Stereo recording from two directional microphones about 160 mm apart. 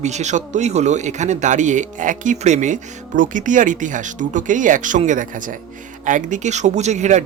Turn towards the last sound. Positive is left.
turn(degrees=-45)  # may be behind; listen again after turning